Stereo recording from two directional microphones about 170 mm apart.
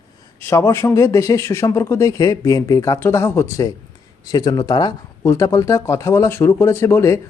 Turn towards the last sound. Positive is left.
turn(degrees=15)  # may be behind; listen again after turning